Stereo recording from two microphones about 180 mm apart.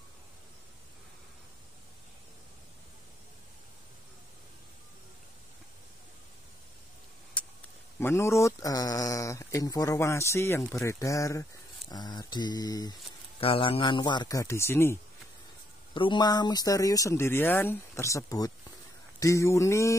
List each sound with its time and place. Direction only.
7.4 s a sound: 5° left (ahead or behind)
8.0 s speech: 15° left (ahead or behind)
15.9 s speech: 25° left (ahead or behind)